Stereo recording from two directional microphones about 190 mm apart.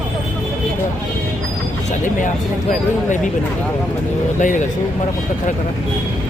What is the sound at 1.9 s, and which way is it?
Speech, 40° left (ahead or behind).